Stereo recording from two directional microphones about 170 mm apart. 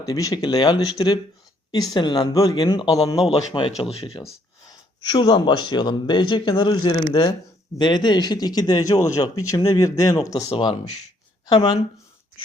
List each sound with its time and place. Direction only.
0.0 s speech: 20° left (ahead or behind)